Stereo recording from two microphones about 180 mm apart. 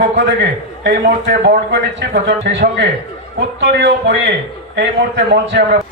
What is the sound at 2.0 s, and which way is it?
A man's voice, 75° right (ahead or behind).